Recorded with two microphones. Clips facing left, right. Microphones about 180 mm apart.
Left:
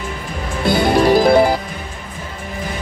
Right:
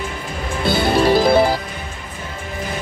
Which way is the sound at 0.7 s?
15° left (ahead or behind).